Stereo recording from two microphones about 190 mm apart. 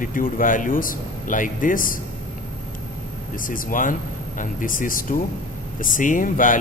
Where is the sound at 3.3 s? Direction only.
45° left (ahead or behind).